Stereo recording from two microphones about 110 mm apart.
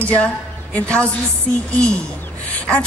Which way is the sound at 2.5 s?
10° left (ahead or behind).